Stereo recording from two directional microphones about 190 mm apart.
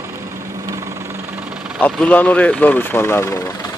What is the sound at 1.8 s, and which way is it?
Speech, 10° left (ahead or behind).